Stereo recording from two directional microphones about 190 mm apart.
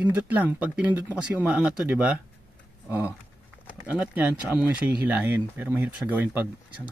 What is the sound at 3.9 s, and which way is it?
Speech, 5° right (ahead or behind).